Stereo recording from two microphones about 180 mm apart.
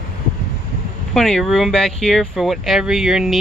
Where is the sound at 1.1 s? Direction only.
Centre (ahead or behind).